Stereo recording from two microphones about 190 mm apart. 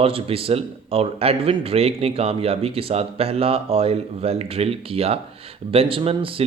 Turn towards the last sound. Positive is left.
turn(degrees=-30)  # may be behind; listen again after turning